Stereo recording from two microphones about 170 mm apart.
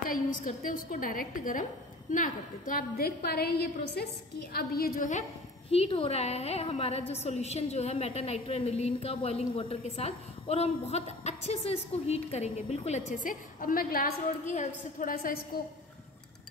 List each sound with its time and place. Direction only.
0.0 s a woman's voice: 55° left (ahead or behind)
5.7 s a woman's voice: 35° left (ahead or behind); by 15.3 s 50° left (ahead or behind)